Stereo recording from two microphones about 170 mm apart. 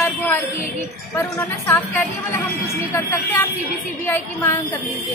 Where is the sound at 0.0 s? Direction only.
10° left (ahead or behind).